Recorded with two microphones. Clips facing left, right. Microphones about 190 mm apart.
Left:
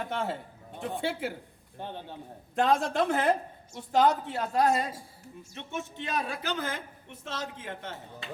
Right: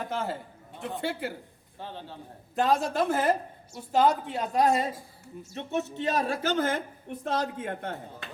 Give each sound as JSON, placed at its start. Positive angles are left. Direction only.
{"t": 0.0, "sound": "a man's voice", "side_deg": 0}
{"t": 1.8, "sound": "a man's voice", "side_deg": 15}
{"t": 2.6, "sound": "a woman's voice", "side_deg": 0}
{"t": 5.5, "sound": "speech", "side_deg": -40}